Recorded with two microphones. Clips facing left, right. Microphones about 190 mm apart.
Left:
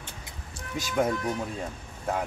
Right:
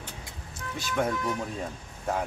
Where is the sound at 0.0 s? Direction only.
25° left (ahead or behind).